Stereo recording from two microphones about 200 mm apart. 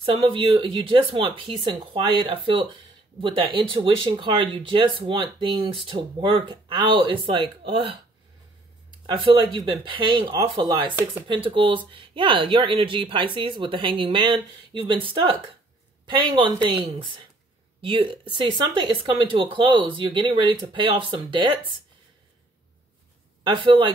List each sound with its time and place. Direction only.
0.0 s speech: 25° right (ahead or behind)
9.0 s speech: 25° right (ahead or behind)
23.4 s speech: 25° right (ahead or behind)